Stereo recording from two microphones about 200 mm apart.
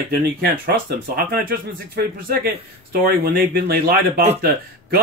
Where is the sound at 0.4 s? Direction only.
50° right (ahead or behind).